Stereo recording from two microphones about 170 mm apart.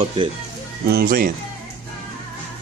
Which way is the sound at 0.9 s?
60° right (ahead or behind).